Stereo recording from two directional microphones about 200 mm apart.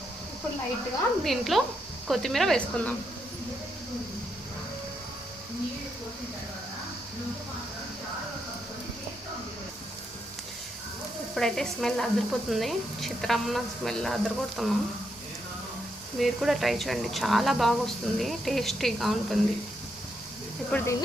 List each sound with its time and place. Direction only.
1.2 s speech: centre (ahead or behind)
11.3 s speech: centre (ahead or behind)
16.1 s speech: centre (ahead or behind)
20.7 s speech: 10° left (ahead or behind)